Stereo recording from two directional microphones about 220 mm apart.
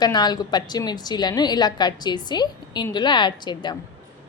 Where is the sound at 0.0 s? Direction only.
20° left (ahead or behind).